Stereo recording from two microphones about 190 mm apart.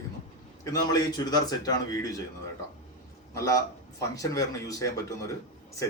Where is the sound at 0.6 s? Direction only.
20° left (ahead or behind).